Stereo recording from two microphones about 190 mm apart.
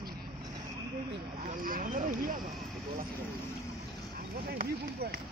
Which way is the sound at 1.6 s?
45° right (ahead or behind).